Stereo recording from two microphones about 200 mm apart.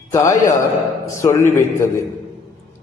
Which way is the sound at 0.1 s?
15° left (ahead or behind).